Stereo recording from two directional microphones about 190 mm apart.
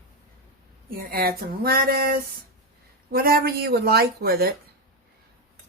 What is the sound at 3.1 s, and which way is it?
Speech, 55° right (ahead or behind).